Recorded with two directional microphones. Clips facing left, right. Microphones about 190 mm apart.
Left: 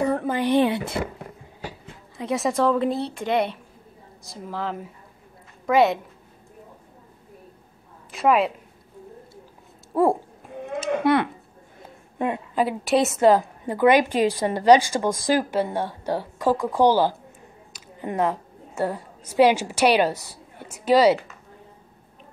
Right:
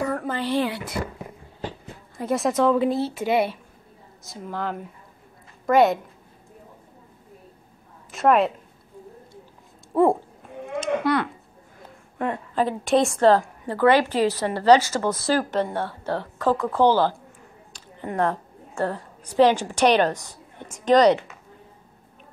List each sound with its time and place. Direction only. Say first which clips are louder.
0.0 s a woman's voice: left 4 dB; 20° left (ahead or behind)
2.1 s a woman's voice: right 1 dB; centre (ahead or behind)
8.1 s a woman's voice: right 1 dB; centre (ahead or behind)
9.9 s a woman's voice: right 1 dB; 5° left (ahead or behind)
11.1 s speech: left 4 dB; 25° left (ahead or behind)
12.2 s a woman's voice: left 1 dB; 15° left (ahead or behind)
18.2 s a woman's voice: even; 5° left (ahead or behind)